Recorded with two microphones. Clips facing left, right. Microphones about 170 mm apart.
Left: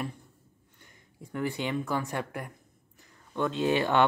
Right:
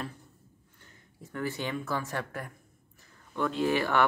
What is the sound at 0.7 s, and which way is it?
Speech, 15° left (ahead or behind).